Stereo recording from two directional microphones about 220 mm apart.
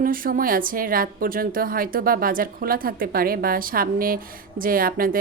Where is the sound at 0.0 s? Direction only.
40° right (ahead or behind).